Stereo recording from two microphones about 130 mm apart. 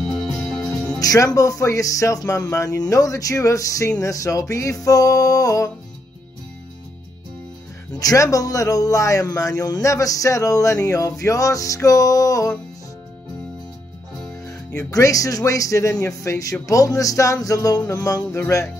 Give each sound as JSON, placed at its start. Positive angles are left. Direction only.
{"t": 0.0, "sound": "music", "side_deg": 0}
{"t": 0.9, "sound": "speech", "side_deg": 25}
{"t": 8.0, "sound": "speech", "side_deg": 25}
{"t": 14.4, "sound": "speech", "side_deg": 25}